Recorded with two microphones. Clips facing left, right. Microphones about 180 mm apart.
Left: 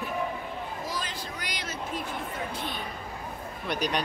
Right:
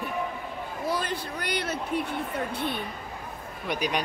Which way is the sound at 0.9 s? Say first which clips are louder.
Right 6 dB; 60° right (ahead or behind).